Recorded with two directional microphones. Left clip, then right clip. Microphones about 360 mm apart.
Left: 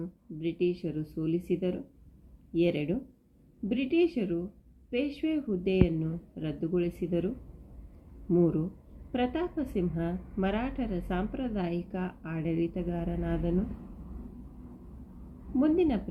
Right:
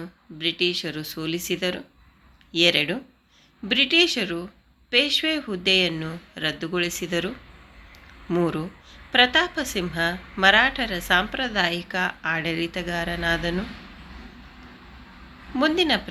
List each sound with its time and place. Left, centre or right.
0.0 s a woman's voice: right
15.5 s a woman's voice: right